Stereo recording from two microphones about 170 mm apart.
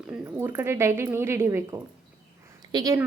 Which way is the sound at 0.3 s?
15° right (ahead or behind).